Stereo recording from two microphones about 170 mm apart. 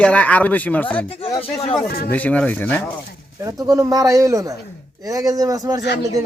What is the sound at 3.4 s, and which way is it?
Speech, 20° right (ahead or behind).